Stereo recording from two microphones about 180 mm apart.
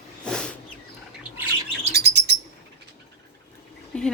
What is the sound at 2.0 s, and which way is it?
Bird, 65° right (ahead or behind).